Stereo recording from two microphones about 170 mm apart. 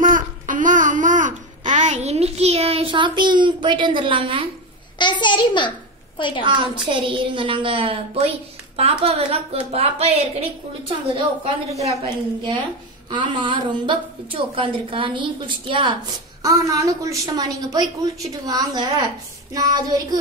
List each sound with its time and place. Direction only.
0.0 s babbling: 50° right (ahead or behind); by 4.5 s 30° right (ahead or behind)
4.9 s a child's voice: 25° left (ahead or behind)
6.4 s a woman's voice: 30° right (ahead or behind)
11.8 s a woman's voice: 30° right (ahead or behind)
16.4 s a woman's voice: 20° right (ahead or behind)